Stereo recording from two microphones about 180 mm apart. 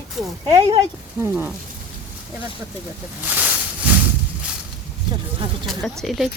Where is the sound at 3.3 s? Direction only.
10° right (ahead or behind).